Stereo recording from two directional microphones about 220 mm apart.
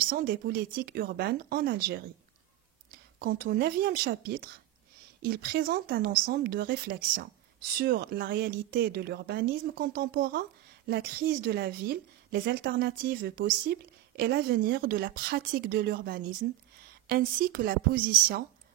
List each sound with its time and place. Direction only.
0.0 s speech: 40° right (ahead or behind)
3.2 s a woman's voice: 40° right (ahead or behind)